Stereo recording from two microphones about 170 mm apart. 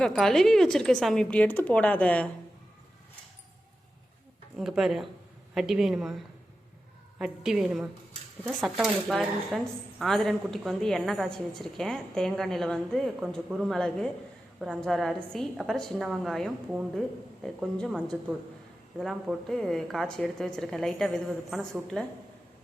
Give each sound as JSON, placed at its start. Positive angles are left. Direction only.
{"t": 0.0, "sound": "a woman's voice", "side_deg": 5}
{"t": 4.5, "sound": "a woman's voice", "side_deg": 0}